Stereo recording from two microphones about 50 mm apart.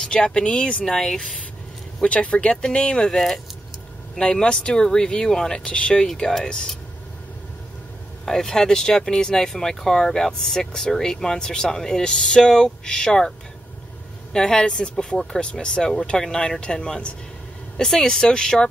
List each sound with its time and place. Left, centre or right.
0.0 s speech: centre
2.0 s speech: left
8.3 s speech: centre
14.3 s speech: centre